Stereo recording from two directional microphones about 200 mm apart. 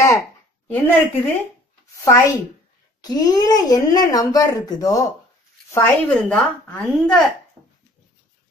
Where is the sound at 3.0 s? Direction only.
20° left (ahead or behind); by 7.2 s centre (ahead or behind).